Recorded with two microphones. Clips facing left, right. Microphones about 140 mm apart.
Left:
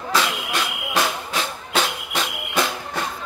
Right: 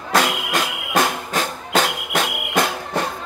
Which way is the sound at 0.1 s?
50° right (ahead or behind).